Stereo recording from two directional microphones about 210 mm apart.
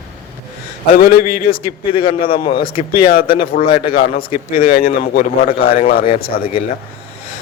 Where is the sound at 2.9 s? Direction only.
45° left (ahead or behind).